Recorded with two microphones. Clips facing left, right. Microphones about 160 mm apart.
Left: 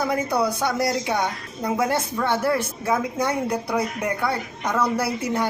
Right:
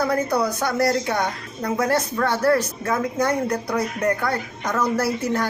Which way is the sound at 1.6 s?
10° left (ahead or behind).